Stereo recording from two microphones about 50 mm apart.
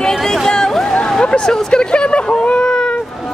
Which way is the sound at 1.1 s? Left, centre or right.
Centre.